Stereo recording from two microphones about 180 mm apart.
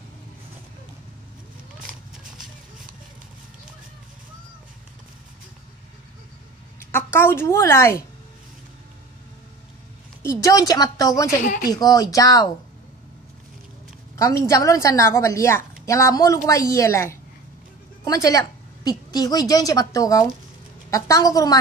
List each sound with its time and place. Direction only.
6.8 s a woman's voice: 15° left (ahead or behind)
10.2 s a woman's voice: 20° left (ahead or behind)
14.1 s a woman's voice: 15° left (ahead or behind)